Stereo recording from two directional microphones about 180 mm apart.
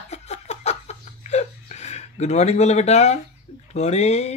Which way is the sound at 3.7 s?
35° left (ahead or behind).